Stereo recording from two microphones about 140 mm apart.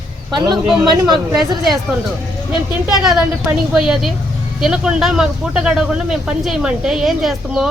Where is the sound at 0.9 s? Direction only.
30° right (ahead or behind).